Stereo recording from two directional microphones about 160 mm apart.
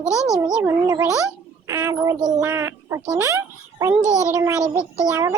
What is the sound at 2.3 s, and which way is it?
A child's voice, 20° right (ahead or behind).